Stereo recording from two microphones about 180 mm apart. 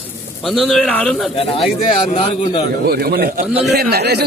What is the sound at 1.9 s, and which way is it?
Speech, 30° left (ahead or behind).